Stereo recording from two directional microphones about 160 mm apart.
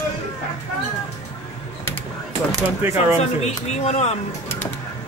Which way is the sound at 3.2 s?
45° left (ahead or behind).